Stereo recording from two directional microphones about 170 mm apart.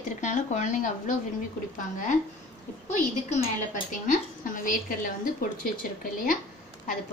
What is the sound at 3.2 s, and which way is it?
A woman's voice, 50° left (ahead or behind).